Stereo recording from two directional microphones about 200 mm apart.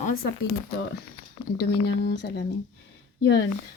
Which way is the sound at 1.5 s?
55° left (ahead or behind).